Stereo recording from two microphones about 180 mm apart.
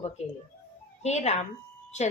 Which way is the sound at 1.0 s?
40° left (ahead or behind).